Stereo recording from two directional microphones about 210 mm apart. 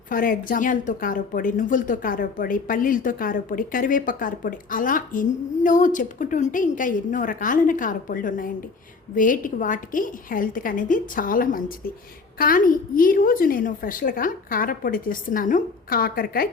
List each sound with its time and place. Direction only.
0.1 s a woman's voice: 40° left (ahead or behind)